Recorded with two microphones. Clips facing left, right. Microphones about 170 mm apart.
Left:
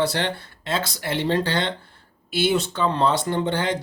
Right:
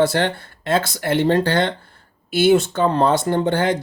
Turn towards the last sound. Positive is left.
turn(degrees=-50)  # may be behind; listen again after turning